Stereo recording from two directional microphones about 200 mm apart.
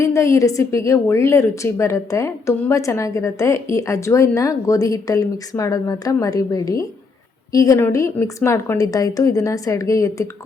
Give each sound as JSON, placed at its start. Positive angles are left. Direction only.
{"t": 0.0, "sound": "a woman's voice", "side_deg": 15}